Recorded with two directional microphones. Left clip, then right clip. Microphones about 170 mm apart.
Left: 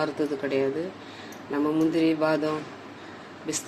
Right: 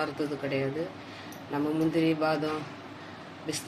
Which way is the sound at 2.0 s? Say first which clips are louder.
Left 3 dB; 40° left (ahead or behind).